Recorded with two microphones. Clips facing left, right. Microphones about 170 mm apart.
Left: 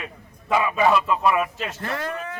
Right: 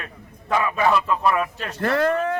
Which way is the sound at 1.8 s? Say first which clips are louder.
Right 11 dB; 65° right (ahead or behind).